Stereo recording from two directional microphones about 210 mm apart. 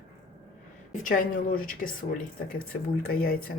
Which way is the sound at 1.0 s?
40° left (ahead or behind).